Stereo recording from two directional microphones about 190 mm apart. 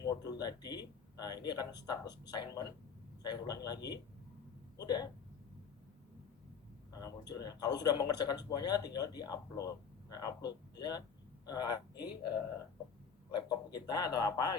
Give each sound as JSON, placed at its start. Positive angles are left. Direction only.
{"t": 0.0, "sound": "a man's voice", "side_deg": 20}
{"t": 7.0, "sound": "a man's voice", "side_deg": 20}
{"t": 13.3, "sound": "a man's voice", "side_deg": 20}